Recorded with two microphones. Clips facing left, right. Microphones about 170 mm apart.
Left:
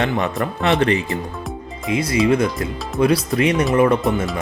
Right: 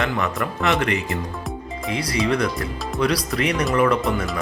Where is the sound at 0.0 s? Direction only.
35° left (ahead or behind).